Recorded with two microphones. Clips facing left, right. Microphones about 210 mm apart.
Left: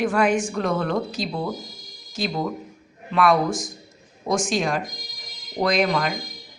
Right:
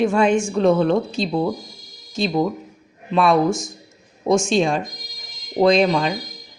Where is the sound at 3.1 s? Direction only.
25° right (ahead or behind).